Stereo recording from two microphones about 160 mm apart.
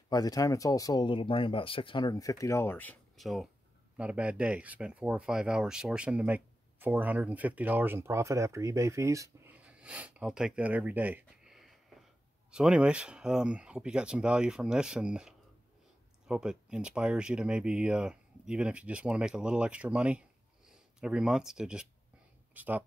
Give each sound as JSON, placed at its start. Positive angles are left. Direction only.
{"t": 0.1, "sound": "speech", "side_deg": 25}
{"t": 3.2, "sound": "speech", "side_deg": 0}
{"t": 11.9, "sound": "a sound", "side_deg": -5}
{"t": 12.4, "sound": "speech", "side_deg": -5}